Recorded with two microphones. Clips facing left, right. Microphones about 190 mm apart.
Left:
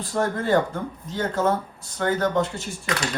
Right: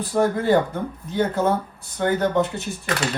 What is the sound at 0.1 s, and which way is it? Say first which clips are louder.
Speech: right 3 dB; 15° right (ahead or behind).